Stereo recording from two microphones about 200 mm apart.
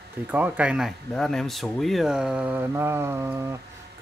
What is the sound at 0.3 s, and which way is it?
Speech, 5° right (ahead or behind).